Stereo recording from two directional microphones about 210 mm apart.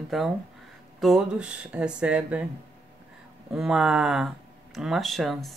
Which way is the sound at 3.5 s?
5° right (ahead or behind).